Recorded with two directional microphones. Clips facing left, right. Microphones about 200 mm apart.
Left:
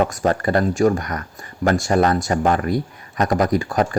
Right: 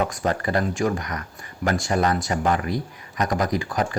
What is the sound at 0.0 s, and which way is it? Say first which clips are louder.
Speech: left 5 dB; 45° left (ahead or behind).